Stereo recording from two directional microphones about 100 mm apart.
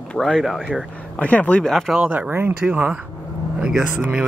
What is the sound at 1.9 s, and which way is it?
Speech, 15° right (ahead or behind).